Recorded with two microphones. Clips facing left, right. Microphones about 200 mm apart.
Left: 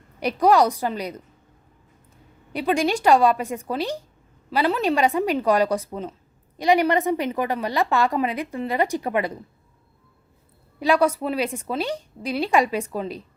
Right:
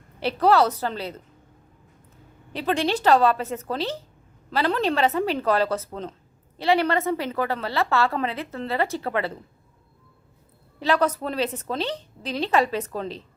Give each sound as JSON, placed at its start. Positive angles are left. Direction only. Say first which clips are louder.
{"t": 0.2, "sound": "a woman's voice", "louder": "left 2 dB", "side_deg": 15}
{"t": 2.5, "sound": "a woman's voice", "louder": "left 2 dB", "side_deg": 10}
{"t": 10.8, "sound": "a woman's voice", "louder": "left 3 dB", "side_deg": 10}